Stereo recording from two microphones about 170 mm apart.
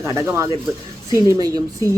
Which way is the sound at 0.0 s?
15° right (ahead or behind).